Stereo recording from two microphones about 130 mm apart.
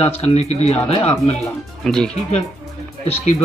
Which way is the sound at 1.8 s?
5° left (ahead or behind).